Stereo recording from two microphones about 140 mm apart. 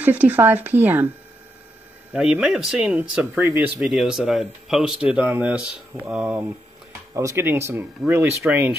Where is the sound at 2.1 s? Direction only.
5° right (ahead or behind).